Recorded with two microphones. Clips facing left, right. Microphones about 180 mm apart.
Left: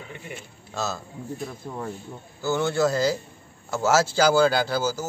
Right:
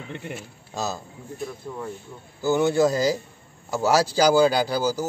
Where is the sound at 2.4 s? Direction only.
15° right (ahead or behind).